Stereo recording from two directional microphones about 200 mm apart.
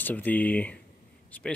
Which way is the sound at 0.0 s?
10° left (ahead or behind).